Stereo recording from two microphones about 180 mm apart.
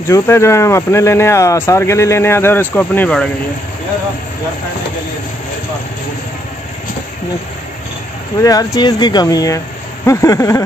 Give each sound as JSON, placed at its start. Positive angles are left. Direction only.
{"t": 0.1, "sound": "speech", "side_deg": 15}
{"t": 8.4, "sound": "speech", "side_deg": 20}